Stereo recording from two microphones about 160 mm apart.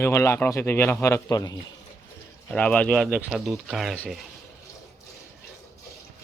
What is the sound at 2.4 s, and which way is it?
Speech, 10° left (ahead or behind).